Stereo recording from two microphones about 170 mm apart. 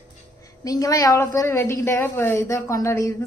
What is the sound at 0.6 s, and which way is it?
A woman's voice, 20° left (ahead or behind).